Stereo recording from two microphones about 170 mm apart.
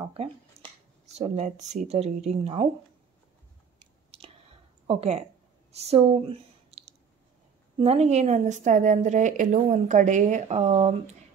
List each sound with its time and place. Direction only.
0.0 s speech: 35° right (ahead or behind)
3.8 s chewing: 35° right (ahead or behind)
4.8 s speech: 40° right (ahead or behind)
5.7 s a sound: 40° right (ahead or behind)
7.8 s a woman's voice: 40° right (ahead or behind)